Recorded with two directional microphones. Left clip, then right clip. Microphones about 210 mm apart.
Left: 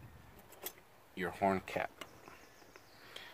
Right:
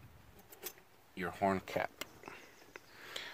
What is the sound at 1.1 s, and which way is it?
Speech, 15° right (ahead or behind).